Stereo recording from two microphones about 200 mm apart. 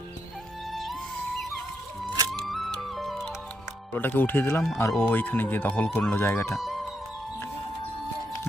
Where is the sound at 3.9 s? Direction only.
10° left (ahead or behind).